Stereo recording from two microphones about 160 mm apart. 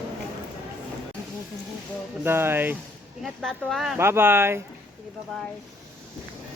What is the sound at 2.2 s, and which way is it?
Speech, 15° right (ahead or behind).